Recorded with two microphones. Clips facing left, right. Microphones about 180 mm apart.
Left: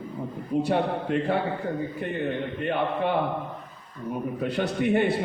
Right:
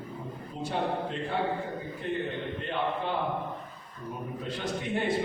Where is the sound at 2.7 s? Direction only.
60° left (ahead or behind).